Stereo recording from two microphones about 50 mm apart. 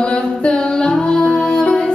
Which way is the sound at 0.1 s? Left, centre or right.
Centre.